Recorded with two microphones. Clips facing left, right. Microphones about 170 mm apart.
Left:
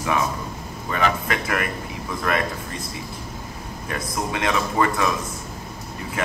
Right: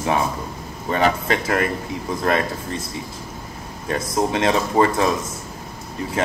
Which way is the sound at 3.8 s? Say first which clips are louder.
Right 6 dB; 30° right (ahead or behind).